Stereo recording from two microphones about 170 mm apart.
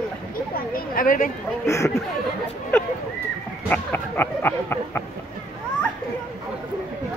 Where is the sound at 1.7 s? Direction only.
15° left (ahead or behind).